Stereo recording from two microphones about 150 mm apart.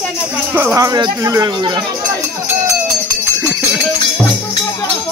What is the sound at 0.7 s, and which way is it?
Speech, 25° right (ahead or behind).